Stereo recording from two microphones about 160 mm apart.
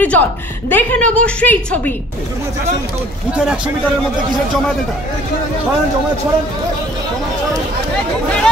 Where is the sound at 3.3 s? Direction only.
5° right (ahead or behind).